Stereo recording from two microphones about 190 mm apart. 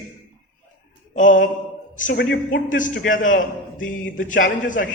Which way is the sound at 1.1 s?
45° left (ahead or behind).